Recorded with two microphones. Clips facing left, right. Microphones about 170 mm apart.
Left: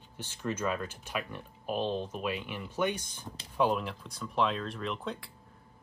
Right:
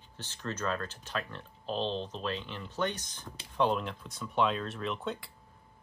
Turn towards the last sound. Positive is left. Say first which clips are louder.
# right 1 dB
turn(degrees=0)  # may be behind; listen again after turning